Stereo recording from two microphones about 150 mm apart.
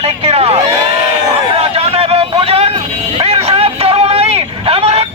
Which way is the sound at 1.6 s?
40° right (ahead or behind).